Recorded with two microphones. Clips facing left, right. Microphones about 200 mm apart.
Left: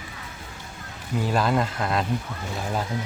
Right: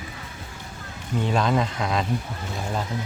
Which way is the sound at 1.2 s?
5° left (ahead or behind).